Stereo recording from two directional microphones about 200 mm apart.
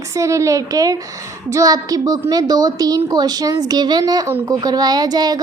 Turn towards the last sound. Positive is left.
turn(degrees=-20)  # may be behind; listen again after turning